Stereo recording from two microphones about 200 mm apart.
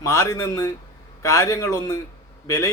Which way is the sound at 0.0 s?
15° left (ahead or behind).